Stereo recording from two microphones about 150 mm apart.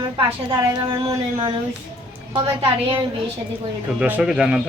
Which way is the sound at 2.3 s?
35° right (ahead or behind).